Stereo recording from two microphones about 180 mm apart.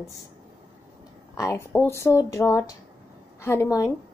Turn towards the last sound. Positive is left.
turn(degrees=15)  # may be behind; listen again after turning